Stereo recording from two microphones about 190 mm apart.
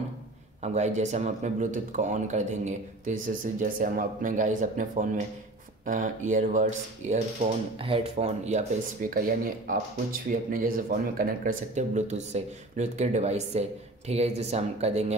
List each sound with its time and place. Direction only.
0.6 s speech: 35° right (ahead or behind)